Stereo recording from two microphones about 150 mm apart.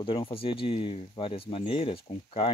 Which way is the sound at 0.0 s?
40° left (ahead or behind).